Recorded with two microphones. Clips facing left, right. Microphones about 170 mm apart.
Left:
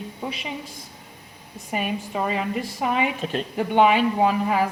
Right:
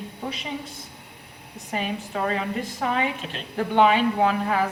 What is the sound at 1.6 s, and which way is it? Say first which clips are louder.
A woman's voice: left 2 dB; 10° left (ahead or behind).